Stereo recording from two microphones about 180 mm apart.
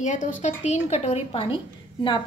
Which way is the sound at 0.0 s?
45° left (ahead or behind).